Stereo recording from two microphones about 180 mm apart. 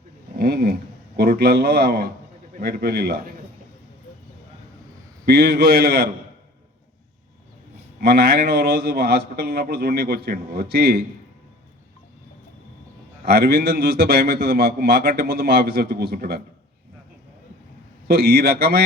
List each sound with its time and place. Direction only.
0.3 s a man's voice: 60° right (ahead or behind)
5.2 s a man's voice: 60° right (ahead or behind)
8.0 s a man's voice: 60° right (ahead or behind)
13.2 s a man's voice: 60° right (ahead or behind)
18.1 s a man's voice: 60° right (ahead or behind)